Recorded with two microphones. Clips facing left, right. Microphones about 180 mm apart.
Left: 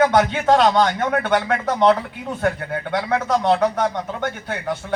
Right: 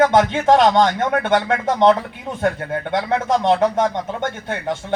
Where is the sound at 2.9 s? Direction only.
25° right (ahead or behind).